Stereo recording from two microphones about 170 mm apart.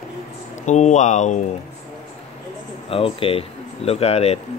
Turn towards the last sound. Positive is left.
turn(degrees=35)  # may be behind; listen again after turning